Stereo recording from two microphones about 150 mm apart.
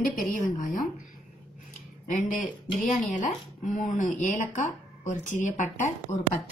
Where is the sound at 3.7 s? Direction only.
55° left (ahead or behind).